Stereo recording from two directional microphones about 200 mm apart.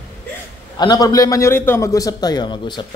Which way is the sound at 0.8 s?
20° left (ahead or behind).